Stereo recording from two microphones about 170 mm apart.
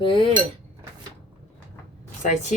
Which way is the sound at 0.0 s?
30° left (ahead or behind).